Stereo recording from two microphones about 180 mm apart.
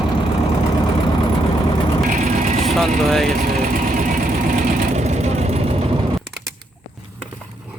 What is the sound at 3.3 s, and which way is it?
Vehicle, 45° right (ahead or behind).